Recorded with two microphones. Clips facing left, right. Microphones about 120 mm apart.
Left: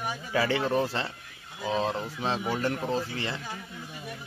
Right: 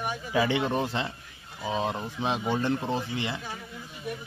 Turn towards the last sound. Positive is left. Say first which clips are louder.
# even
turn(degrees=-15)  # may be behind; listen again after turning